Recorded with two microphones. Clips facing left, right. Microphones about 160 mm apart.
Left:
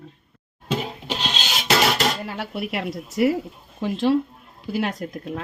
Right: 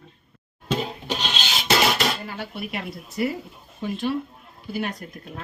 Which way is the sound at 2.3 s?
80° left.